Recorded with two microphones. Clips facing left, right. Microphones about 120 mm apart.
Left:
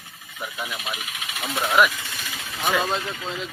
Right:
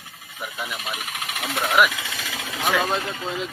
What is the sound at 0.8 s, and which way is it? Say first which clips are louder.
Speech: right 2 dB; 45° right (ahead or behind).